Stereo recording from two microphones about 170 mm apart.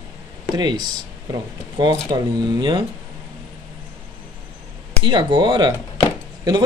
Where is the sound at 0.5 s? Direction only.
25° right (ahead or behind).